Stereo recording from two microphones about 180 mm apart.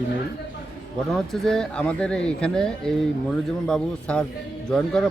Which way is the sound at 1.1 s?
Centre (ahead or behind).